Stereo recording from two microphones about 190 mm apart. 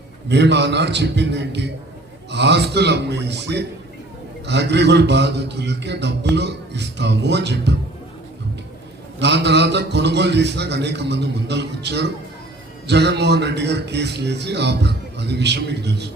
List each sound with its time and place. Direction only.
0.3 s a man's voice: 65° right (ahead or behind)
9.1 s a man's voice: 65° right (ahead or behind)